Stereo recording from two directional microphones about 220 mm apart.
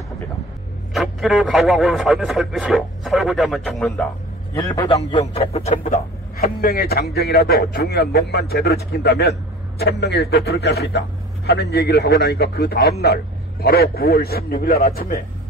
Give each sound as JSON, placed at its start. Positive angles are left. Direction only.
{"t": 0.9, "sound": "speech", "side_deg": 0}
{"t": 4.6, "sound": "a man's voice", "side_deg": 20}
{"t": 6.3, "sound": "speech", "side_deg": 45}